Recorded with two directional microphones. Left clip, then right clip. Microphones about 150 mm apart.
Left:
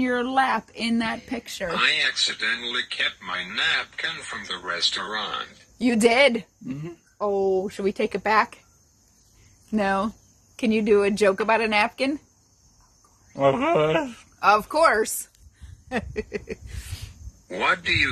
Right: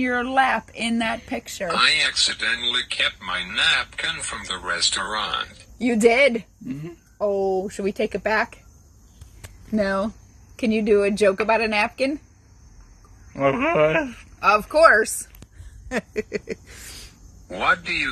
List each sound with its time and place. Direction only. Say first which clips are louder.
0.2 s speech: right 4 dB; 10° right (ahead or behind)
1.3 s speech: right 2 dB; centre (ahead or behind)
1.8 s speech: right 3 dB; 25° right (ahead or behind)
3.7 s speech: right 3 dB; 45° right (ahead or behind)
5.8 s speech: right 1 dB; 15° left (ahead or behind)
7.2 s a woman's voice: right 1 dB; 10° left (ahead or behind)
9.8 s speech: right 1 dB; 5° right (ahead or behind)
13.3 s speech: even; 25° left (ahead or behind)
14.4 s speech: right 3 dB; 15° right (ahead or behind)
15.9 s a sound: right 3 dB; 20° right (ahead or behind)
17.5 s speech: right 1 dB; centre (ahead or behind)